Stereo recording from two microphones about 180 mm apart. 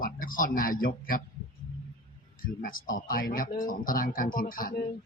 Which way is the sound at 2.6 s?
50° left (ahead or behind).